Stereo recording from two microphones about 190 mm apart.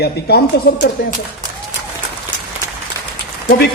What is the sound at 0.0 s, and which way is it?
Speech, 55° left (ahead or behind).